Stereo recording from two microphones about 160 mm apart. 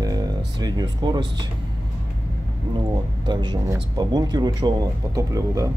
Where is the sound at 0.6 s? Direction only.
25° right (ahead or behind).